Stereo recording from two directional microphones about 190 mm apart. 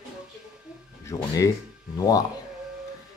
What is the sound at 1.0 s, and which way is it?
Speech, 15° left (ahead or behind).